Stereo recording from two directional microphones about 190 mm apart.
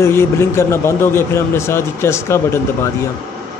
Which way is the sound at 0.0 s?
10° left (ahead or behind).